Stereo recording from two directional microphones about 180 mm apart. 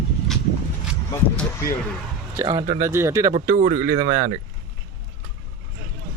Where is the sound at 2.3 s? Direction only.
25° right (ahead or behind).